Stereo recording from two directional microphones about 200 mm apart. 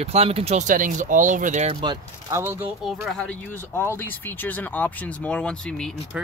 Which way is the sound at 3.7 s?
10° left (ahead or behind).